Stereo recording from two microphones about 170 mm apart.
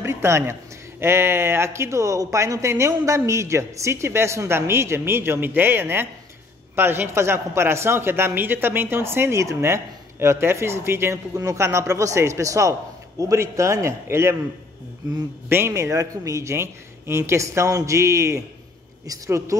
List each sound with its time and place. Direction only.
0.0 s speech: 15° right (ahead or behind)
15.5 s a woman's voice: 15° right (ahead or behind)